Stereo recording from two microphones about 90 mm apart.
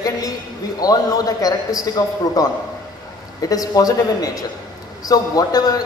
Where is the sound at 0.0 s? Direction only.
40° left (ahead or behind).